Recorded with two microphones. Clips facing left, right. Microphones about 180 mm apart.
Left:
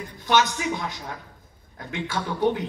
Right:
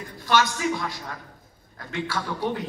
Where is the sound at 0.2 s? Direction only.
20° left (ahead or behind).